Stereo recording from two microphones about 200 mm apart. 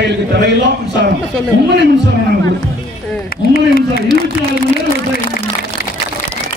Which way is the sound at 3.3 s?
50° left (ahead or behind).